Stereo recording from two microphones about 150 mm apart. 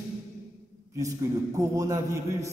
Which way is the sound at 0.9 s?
20° right (ahead or behind).